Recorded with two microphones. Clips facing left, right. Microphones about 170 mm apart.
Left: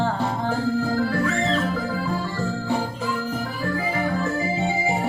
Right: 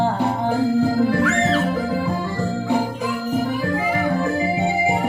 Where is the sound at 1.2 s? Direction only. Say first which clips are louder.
Right 4 dB; 80° right.